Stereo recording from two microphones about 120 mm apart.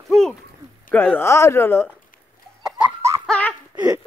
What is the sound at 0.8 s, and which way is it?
Speech, 15° left (ahead or behind).